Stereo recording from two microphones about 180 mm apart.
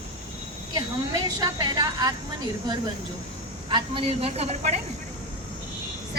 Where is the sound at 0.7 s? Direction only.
20° right (ahead or behind).